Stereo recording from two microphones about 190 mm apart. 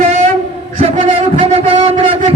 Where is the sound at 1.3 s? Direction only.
30° right (ahead or behind).